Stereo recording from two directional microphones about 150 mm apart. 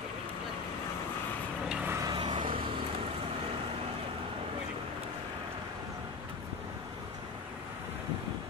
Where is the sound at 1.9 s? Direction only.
20° right (ahead or behind).